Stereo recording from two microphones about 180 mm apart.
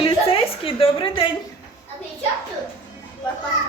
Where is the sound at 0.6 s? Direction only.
30° left (ahead or behind).